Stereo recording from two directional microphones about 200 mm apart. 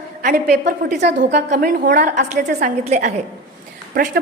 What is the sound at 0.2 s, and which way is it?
A woman's voice, 40° right (ahead or behind).